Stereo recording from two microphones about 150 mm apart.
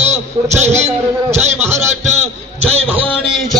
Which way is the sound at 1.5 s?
15° right (ahead or behind).